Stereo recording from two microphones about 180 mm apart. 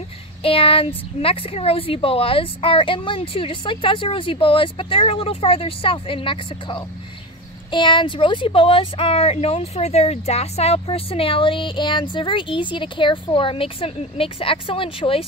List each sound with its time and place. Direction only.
0.4 s speech: 30° left (ahead or behind)